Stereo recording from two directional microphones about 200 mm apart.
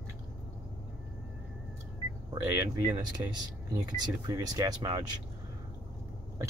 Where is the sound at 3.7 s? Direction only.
15° right (ahead or behind).